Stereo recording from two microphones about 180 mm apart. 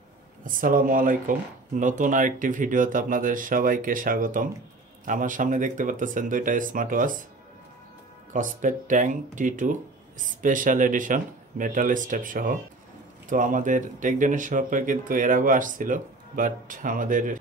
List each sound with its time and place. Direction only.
0.5 s speech: 50° right (ahead or behind)
8.3 s speech: 45° right (ahead or behind)